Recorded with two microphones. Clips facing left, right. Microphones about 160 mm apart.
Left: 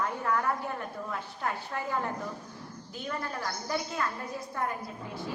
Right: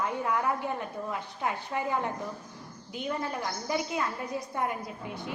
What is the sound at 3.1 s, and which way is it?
A woman's voice, 15° right (ahead or behind).